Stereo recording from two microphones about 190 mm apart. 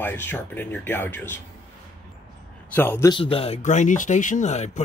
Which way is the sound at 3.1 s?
30° left (ahead or behind).